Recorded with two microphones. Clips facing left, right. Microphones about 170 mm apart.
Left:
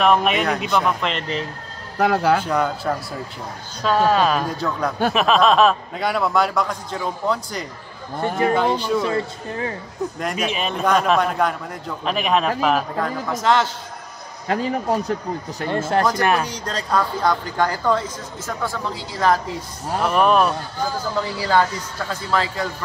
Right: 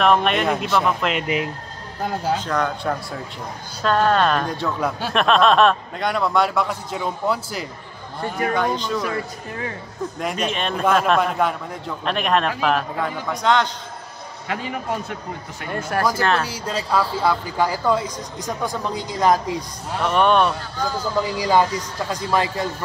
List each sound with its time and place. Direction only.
0.0 s a man's voice: centre (ahead or behind)
2.0 s speech: 75° left (ahead or behind)
2.4 s a man's voice: 10° left (ahead or behind)
8.2 s a man's voice: 25° left (ahead or behind)
8.5 s speech: 5° left (ahead or behind)
9.0 s a man's voice: 25° left (ahead or behind)
10.1 s a man's voice: centre (ahead or behind)
14.5 s a man's voice: 35° left (ahead or behind)
15.6 s a man's voice: 25° left (ahead or behind)
16.2 s speech: 15° left (ahead or behind)
16.4 s speech: 5° right (ahead or behind)
20.0 s a man's voice: centre (ahead or behind)
21.3 s speech: 15° right (ahead or behind)